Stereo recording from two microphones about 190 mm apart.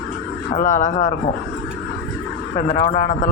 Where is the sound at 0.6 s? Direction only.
40° left (ahead or behind).